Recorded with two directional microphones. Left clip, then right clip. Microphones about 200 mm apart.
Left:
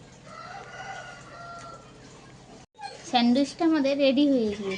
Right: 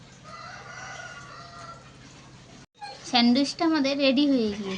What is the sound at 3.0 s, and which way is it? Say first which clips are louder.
A woman's voice: right 1 dB; 25° right (ahead or behind).